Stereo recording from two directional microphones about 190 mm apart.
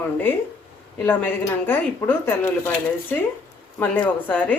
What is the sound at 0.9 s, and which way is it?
Speech, 10° left (ahead or behind).